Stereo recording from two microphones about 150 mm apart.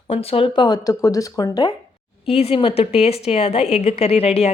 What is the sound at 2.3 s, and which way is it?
A woman's voice, 40° left (ahead or behind).